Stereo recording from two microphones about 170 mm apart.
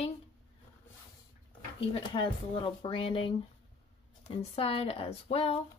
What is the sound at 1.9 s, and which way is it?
A woman's voice, 30° left (ahead or behind).